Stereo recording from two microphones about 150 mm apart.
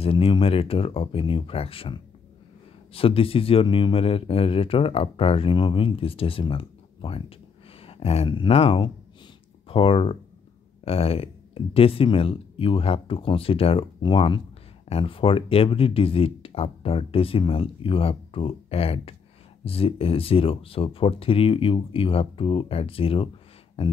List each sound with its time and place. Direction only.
0.0 s speech: 40° left (ahead or behind)